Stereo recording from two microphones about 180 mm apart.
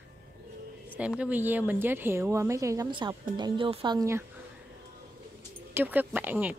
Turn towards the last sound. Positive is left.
turn(degrees=-10)  # may be behind; listen again after turning